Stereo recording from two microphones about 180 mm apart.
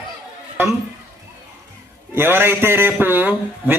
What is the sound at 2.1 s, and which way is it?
A man's voice, 10° right (ahead or behind).